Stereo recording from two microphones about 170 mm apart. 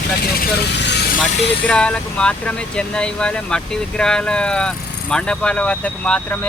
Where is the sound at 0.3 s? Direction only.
90° left.